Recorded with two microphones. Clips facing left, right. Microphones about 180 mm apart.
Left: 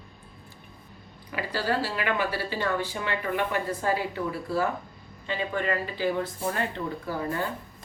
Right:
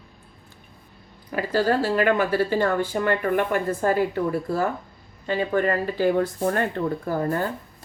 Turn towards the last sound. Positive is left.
turn(degrees=-45)  # may be behind; listen again after turning